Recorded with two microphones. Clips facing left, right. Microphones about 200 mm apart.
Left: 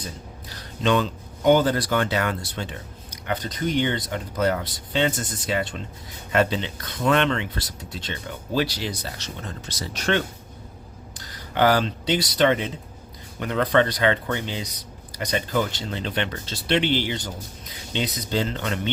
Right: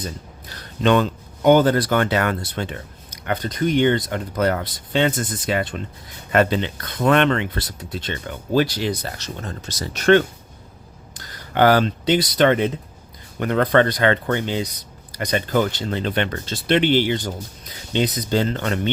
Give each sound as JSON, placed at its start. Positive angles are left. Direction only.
{"t": 0.8, "sound": "speech", "side_deg": -60}